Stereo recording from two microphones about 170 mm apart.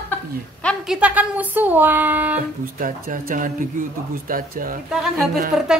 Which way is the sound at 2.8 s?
55° right (ahead or behind).